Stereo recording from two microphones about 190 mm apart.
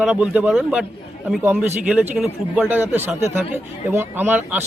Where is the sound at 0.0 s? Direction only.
5° right (ahead or behind).